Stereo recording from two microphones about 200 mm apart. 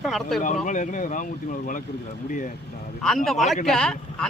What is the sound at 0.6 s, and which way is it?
Speech, 40° left (ahead or behind).